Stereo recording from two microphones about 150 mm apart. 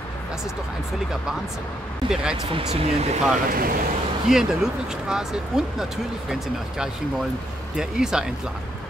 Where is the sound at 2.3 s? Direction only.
35° right (ahead or behind).